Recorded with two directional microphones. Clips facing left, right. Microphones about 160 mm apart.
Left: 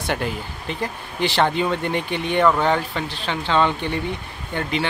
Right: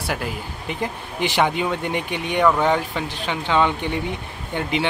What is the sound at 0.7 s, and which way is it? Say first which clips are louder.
Speech: right 1 dB; 15° right (ahead or behind).